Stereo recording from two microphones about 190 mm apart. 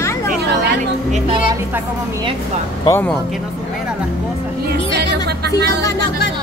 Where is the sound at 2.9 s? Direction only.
10° left (ahead or behind).